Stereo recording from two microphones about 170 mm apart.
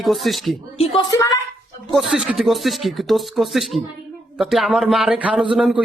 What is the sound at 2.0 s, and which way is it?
Speech, centre (ahead or behind).